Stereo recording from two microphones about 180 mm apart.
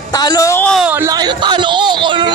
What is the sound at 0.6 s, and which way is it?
Speech, centre (ahead or behind).